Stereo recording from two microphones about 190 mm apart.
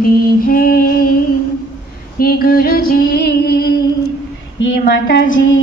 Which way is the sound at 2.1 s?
50° left (ahead or behind).